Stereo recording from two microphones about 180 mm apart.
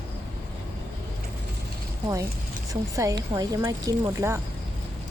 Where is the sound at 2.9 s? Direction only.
20° right (ahead or behind).